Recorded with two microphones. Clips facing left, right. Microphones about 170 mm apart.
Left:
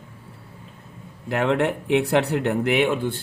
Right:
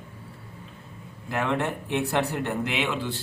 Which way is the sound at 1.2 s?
60° left (ahead or behind).